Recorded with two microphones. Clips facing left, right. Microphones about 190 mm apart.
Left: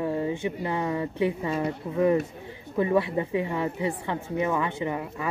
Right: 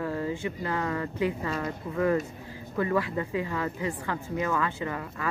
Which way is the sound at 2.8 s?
20° left (ahead or behind).